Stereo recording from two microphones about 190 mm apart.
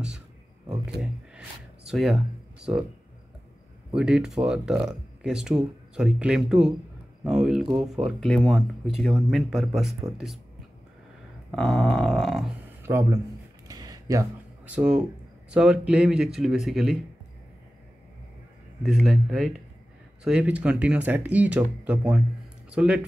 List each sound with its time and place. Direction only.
1.9 s speech: centre (ahead or behind)
3.9 s speech: 5° right (ahead or behind)
11.5 s speech: 5° left (ahead or behind)
12.8 s speech: 15° right (ahead or behind)
13.7 s a sound: 20° right (ahead or behind)
14.8 s speech: 5° right (ahead or behind)
18.8 s speech: centre (ahead or behind)